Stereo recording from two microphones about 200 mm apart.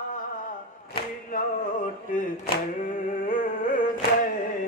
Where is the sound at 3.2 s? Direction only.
40° left (ahead or behind).